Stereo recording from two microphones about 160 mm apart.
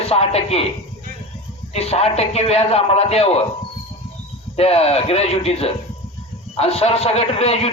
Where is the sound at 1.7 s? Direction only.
40° left (ahead or behind).